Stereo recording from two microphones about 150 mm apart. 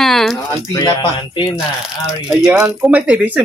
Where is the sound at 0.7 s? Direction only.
30° left (ahead or behind).